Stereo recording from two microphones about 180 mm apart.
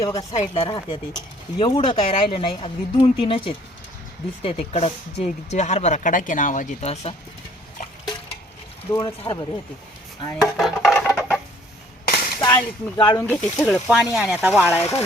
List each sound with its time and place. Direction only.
0.0 s speech: 20° left (ahead or behind)
0.3 s speech: 30° left (ahead or behind)
8.9 s speech: 25° left (ahead or behind)
10.6 s music: centre (ahead or behind)
12.0 s a sound: 55° left (ahead or behind)
12.4 s speech: 20° left (ahead or behind)
13.2 s speech: 10° left (ahead or behind)
13.9 s speech: centre (ahead or behind)
14.7 s speech: 15° left (ahead or behind)